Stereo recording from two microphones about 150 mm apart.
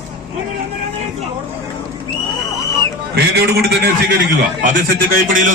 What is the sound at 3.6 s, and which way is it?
Speech, 90° right.